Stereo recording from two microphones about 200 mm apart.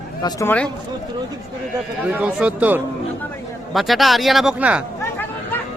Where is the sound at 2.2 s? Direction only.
5° right (ahead or behind).